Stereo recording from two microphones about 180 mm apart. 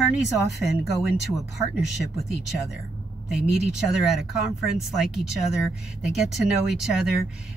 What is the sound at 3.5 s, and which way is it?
A woman's voice, 5° right (ahead or behind).